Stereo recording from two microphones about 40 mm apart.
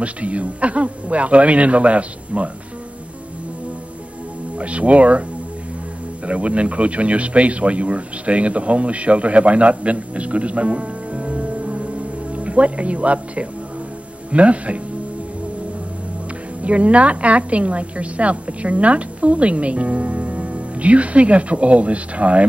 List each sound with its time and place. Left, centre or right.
0.0 s a woman's voice: right
4.6 s a woman's voice: right
6.2 s a woman's voice: right
16.6 s a woman's voice: right